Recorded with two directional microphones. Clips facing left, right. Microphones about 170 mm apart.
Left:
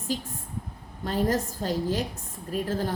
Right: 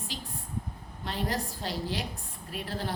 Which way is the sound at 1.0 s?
45° left (ahead or behind).